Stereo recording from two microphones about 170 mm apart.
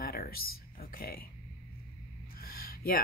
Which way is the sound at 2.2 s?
60° left (ahead or behind).